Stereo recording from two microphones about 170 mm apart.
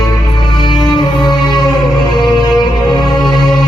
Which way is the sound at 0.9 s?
25° left (ahead or behind).